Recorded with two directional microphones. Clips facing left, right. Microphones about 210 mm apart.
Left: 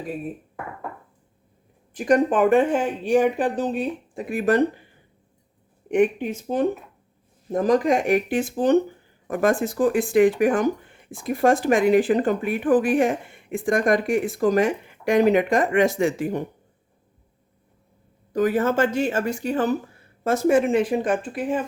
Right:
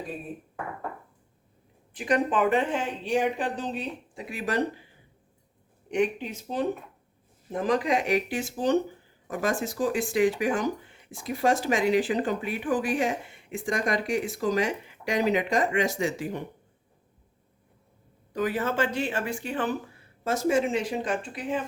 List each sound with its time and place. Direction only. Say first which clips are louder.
2.0 s speech: left 6 dB; 45° left (ahead or behind)
5.9 s speech: left 6 dB; 50° left (ahead or behind)
18.3 s speech: left 7 dB; 45° left (ahead or behind)
20.2 s speech: left 6 dB; 55° left (ahead or behind)